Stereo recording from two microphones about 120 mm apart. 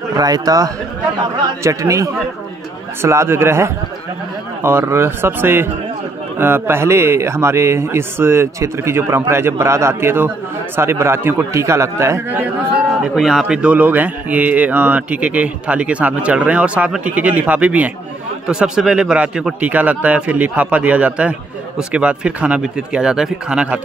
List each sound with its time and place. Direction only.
0.1 s a man's voice: 30° right (ahead or behind); by 23.8 s 10° right (ahead or behind)